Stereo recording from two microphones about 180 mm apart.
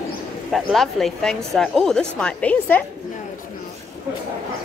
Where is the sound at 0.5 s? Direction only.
Centre (ahead or behind).